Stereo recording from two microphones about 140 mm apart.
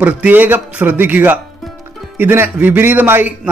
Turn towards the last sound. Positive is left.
turn(degrees=-15)  # may be behind; listen again after turning